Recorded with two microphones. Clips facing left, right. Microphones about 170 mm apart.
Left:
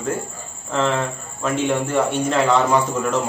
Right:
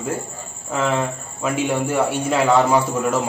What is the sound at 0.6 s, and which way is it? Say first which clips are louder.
A man's voice: even; 10° right (ahead or behind).